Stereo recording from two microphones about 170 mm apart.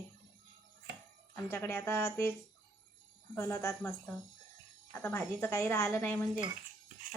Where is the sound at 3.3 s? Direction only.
15° left (ahead or behind).